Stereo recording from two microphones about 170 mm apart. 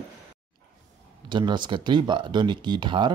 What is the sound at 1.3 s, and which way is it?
Speech, 25° right (ahead or behind).